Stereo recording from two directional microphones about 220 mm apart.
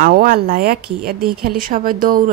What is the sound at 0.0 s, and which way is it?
Speech, 40° right (ahead or behind).